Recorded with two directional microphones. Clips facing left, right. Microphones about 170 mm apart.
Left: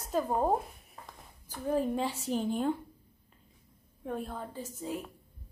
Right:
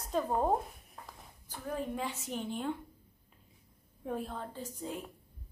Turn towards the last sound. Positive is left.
turn(degrees=5)  # may be behind; listen again after turning